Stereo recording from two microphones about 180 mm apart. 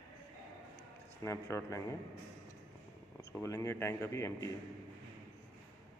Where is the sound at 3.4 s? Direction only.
15° left (ahead or behind).